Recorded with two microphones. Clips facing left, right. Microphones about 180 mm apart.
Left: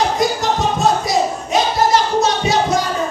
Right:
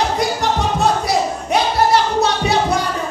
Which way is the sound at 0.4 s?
60° right (ahead or behind).